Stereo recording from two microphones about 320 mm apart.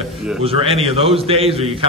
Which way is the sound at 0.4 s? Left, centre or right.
Centre.